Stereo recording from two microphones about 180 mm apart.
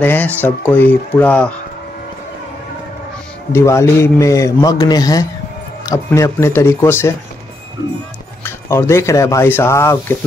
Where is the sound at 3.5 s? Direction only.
15° left (ahead or behind).